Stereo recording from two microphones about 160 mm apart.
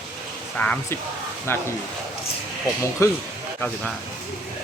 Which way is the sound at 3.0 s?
20° left (ahead or behind).